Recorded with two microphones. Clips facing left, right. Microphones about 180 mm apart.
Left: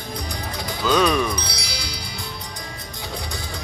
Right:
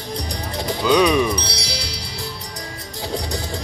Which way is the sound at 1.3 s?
30° right (ahead or behind).